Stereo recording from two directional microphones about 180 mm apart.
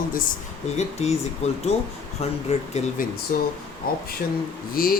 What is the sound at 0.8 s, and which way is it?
Speech, 40° left (ahead or behind).